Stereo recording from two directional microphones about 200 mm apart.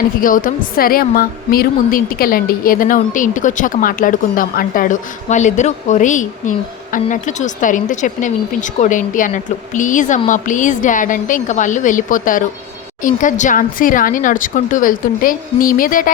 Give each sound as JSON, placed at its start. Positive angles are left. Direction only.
{"t": 0.2, "sound": "a woman's voice", "side_deg": 45}